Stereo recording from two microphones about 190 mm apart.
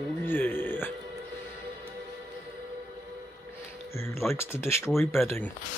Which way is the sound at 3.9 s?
15° left (ahead or behind).